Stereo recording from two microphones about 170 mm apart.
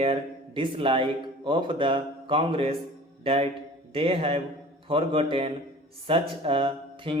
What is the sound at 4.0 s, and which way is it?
Speech, 35° right (ahead or behind).